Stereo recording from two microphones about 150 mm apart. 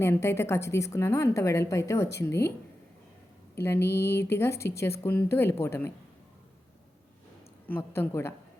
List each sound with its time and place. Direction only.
0.0 s a woman's voice: 15° left (ahead or behind)
3.5 s a woman's voice: 15° left (ahead or behind)
7.7 s a woman's voice: 15° left (ahead or behind)